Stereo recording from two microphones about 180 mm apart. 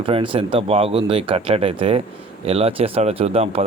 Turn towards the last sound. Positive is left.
turn(degrees=-35)  # may be behind; listen again after turning